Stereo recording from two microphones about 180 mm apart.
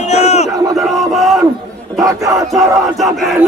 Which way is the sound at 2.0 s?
20° right (ahead or behind).